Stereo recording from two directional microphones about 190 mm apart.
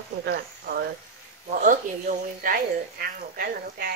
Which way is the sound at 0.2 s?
60° right (ahead or behind).